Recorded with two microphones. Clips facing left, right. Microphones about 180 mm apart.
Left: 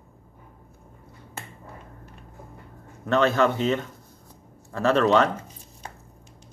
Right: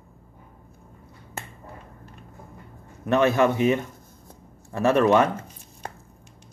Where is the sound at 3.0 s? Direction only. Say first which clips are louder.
Right 1 dB; 15° right (ahead or behind).